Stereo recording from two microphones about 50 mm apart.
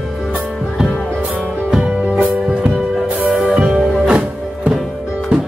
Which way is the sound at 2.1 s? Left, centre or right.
Right.